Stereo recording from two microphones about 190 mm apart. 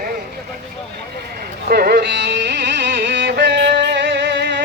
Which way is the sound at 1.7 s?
60° right (ahead or behind).